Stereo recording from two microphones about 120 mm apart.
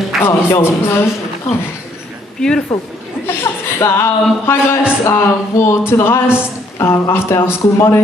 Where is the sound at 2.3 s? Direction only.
5° left (ahead or behind).